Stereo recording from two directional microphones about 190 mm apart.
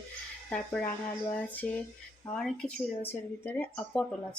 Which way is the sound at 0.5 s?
5° left (ahead or behind).